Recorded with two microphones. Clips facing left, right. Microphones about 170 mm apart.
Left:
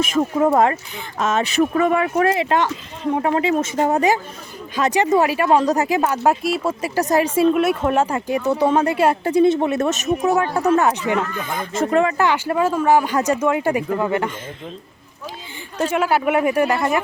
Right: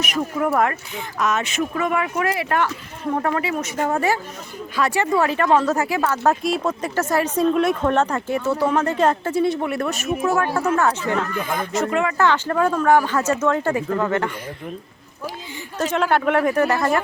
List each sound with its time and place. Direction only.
0.1 s speech: 25° left (ahead or behind)
6.4 s speech: 5° left (ahead or behind)
11.8 s speech: 35° left (ahead or behind)
12.1 s speech: 15° left (ahead or behind)
15.9 s speech: 5° left (ahead or behind)